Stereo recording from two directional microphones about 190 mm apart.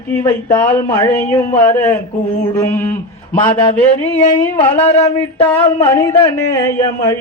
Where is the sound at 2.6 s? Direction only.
10° left (ahead or behind).